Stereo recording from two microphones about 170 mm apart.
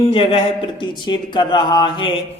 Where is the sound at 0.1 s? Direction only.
35° left (ahead or behind).